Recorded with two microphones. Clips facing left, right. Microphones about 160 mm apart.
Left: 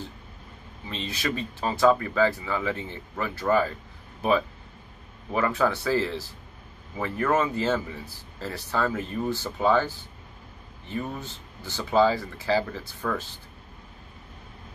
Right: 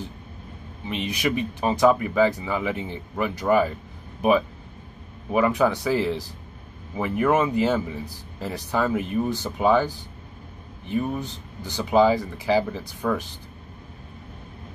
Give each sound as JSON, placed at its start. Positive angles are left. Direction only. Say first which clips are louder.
{"t": 0.8, "sound": "speech", "louder": "right 5 dB", "side_deg": -15}